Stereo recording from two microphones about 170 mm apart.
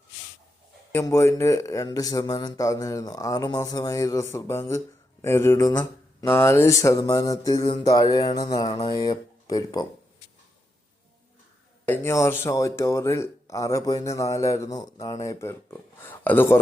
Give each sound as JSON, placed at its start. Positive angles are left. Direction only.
{"t": 0.9, "sound": "a man's voice", "side_deg": 15}
{"t": 11.9, "sound": "speech", "side_deg": 15}